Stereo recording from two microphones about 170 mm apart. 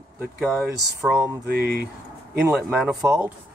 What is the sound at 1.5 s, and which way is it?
Speech, 65° right (ahead or behind).